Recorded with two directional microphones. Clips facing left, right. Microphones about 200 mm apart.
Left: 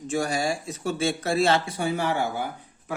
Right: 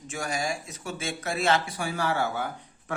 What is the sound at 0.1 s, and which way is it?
Speech, 35° left (ahead or behind).